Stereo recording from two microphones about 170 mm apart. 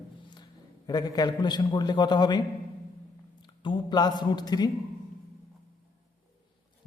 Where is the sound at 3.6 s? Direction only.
25° left (ahead or behind).